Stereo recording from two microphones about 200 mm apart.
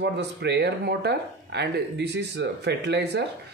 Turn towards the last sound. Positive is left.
turn(degrees=-55)  # may be behind; listen again after turning